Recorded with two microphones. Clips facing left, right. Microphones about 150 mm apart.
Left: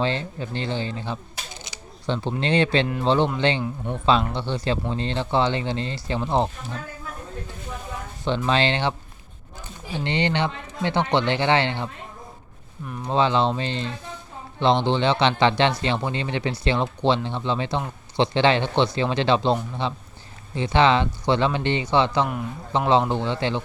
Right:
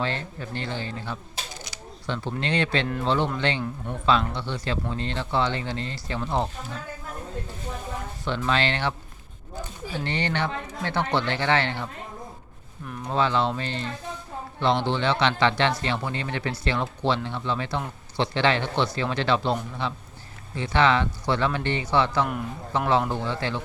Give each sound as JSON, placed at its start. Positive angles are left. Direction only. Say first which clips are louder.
{"t": 0.0, "sound": "speech", "louder": "left 4 dB", "side_deg": 25}
{"t": 1.6, "sound": "a sound", "louder": "left 7 dB", "side_deg": 25}
{"t": 2.4, "sound": "speech", "louder": "left 5 dB", "side_deg": 30}
{"t": 8.4, "sound": "speech", "louder": "left 3 dB", "side_deg": 30}
{"t": 13.1, "sound": "speech", "louder": "left 3 dB", "side_deg": 25}